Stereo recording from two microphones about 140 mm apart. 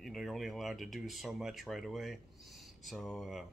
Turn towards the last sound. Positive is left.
turn(degrees=0)  # may be behind; listen again after turning